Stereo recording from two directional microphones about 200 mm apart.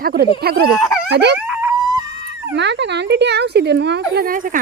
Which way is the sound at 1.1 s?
60° right (ahead or behind).